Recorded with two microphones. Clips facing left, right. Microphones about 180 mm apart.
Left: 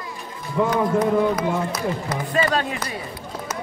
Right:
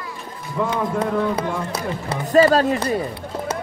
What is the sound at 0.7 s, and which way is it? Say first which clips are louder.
A man's voice: left 3 dB; 30° right (ahead or behind).